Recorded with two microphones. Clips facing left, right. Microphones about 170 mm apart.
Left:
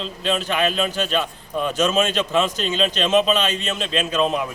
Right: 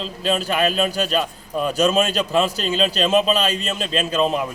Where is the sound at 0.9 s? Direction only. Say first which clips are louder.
Right 2 dB; 40° right (ahead or behind).